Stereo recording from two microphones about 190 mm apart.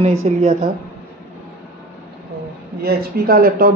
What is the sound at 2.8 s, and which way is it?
Speech, 55° right (ahead or behind).